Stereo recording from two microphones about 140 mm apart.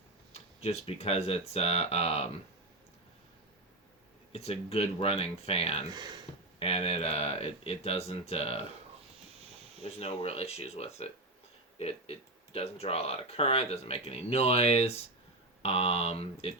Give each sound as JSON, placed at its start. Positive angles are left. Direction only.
{"t": 0.3, "sound": "speech", "side_deg": 50}
{"t": 4.3, "sound": "speech", "side_deg": 45}
{"t": 5.9, "sound": "speech", "side_deg": -30}
{"t": 6.6, "sound": "speech", "side_deg": 45}
{"t": 10.0, "sound": "speech", "side_deg": 45}